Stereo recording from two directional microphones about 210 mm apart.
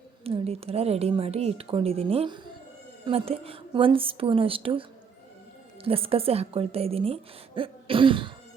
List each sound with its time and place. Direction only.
0.3 s a woman's voice: 30° right (ahead or behind)